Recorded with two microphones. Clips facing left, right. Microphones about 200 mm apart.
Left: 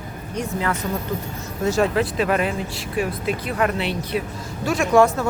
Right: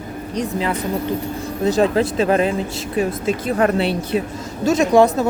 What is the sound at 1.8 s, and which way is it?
Speech, 30° right (ahead or behind).